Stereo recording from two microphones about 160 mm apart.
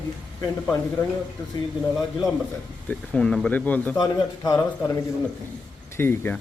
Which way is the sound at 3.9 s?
20° left (ahead or behind).